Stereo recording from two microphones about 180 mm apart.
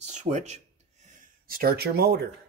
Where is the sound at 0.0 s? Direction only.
40° right (ahead or behind).